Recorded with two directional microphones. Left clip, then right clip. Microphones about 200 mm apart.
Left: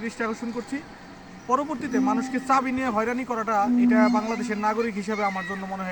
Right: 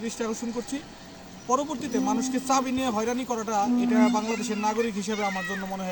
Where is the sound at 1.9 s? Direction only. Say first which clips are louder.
Left 2 dB; centre (ahead or behind).